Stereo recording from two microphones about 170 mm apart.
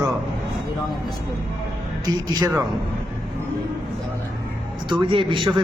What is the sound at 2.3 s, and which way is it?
Speech, 20° right (ahead or behind).